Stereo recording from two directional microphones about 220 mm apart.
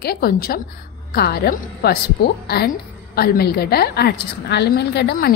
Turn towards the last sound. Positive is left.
turn(degrees=50)  # may be behind; listen again after turning